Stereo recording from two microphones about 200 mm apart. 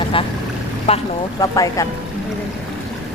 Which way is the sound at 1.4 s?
15° left (ahead or behind).